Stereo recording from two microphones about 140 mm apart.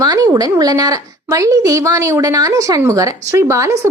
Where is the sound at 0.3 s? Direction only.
25° right (ahead or behind).